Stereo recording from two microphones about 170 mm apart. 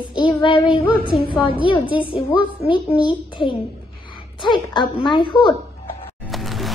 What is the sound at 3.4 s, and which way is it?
A child's voice, 30° left (ahead or behind).